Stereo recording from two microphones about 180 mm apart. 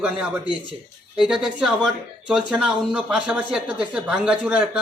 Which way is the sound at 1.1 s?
5° right (ahead or behind).